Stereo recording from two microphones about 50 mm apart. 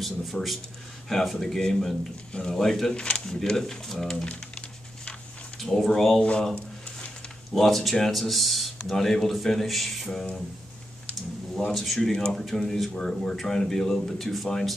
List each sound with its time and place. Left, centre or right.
0.0 s a man's voice: centre
2.9 s speech: left
3.3 s speech: centre
5.6 s a man's voice: centre
7.5 s a man's voice: centre
11.7 s a man's voice: centre